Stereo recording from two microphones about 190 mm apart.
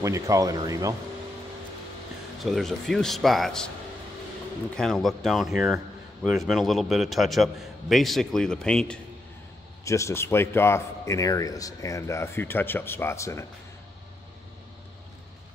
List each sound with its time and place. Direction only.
0.0 s speech: 15° right (ahead or behind)
2.4 s a man's voice: centre (ahead or behind)
4.7 s a man's voice: centre (ahead or behind)
9.8 s a man's voice: 15° left (ahead or behind)